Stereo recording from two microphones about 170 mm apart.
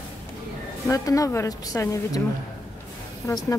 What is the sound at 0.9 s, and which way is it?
A woman's voice, 20° left (ahead or behind).